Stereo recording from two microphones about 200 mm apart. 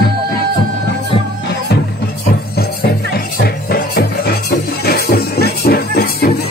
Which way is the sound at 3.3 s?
50° left (ahead or behind).